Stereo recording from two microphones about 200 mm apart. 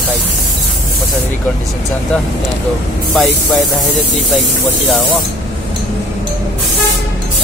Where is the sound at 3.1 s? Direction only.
Centre (ahead or behind).